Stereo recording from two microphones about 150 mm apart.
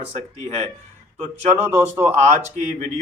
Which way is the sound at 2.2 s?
50° right (ahead or behind).